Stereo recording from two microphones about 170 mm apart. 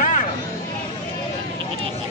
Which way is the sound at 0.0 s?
50° left (ahead or behind).